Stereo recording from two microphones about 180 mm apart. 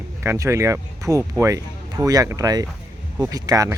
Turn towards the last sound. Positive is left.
turn(degrees=-20)  # may be behind; listen again after turning